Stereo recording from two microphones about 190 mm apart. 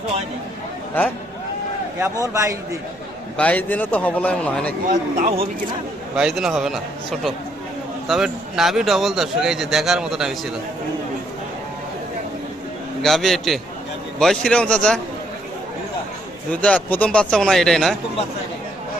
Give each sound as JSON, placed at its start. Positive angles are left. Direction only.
{"t": 2.0, "sound": "a man's voice", "side_deg": -15}
{"t": 3.3, "sound": "a man's voice", "side_deg": 10}
{"t": 4.9, "sound": "speech", "side_deg": -30}
{"t": 6.1, "sound": "speech", "side_deg": 0}
{"t": 13.0, "sound": "speech", "side_deg": 0}
{"t": 16.5, "sound": "speech", "side_deg": 5}